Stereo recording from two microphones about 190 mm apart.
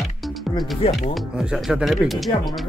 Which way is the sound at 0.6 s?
30° left (ahead or behind).